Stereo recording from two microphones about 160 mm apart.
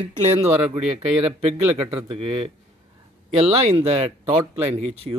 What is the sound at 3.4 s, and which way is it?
Speech, 40° right (ahead or behind).